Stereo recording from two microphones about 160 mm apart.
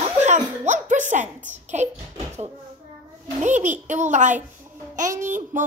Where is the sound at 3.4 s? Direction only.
50° right (ahead or behind).